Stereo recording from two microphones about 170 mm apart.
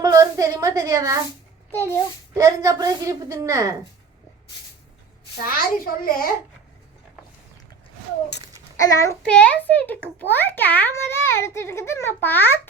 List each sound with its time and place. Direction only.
0.0 s a woman's voice: 20° right (ahead or behind)
1.7 s a child's voice: 15° left (ahead or behind)
2.3 s a woman's voice: 20° right (ahead or behind)
5.4 s a child's voice: 60° left (ahead or behind)
8.7 s a child's voice: 20° left (ahead or behind)
9.2 s a child's voice: 5° left (ahead or behind)